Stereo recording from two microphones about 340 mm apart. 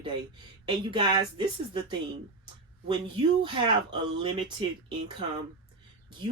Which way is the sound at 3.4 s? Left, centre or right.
Centre.